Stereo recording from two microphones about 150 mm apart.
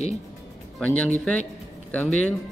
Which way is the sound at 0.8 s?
10° left (ahead or behind).